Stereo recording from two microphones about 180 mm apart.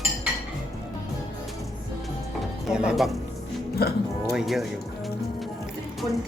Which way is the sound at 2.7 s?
5° right (ahead or behind).